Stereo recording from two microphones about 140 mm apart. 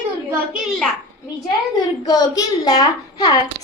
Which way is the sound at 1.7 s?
30° left (ahead or behind).